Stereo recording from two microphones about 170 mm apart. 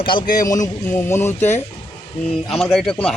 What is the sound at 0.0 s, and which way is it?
A man's voice, 30° left (ahead or behind).